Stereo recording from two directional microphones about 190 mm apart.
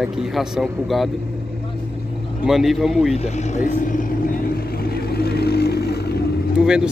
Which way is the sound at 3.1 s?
40° left (ahead or behind).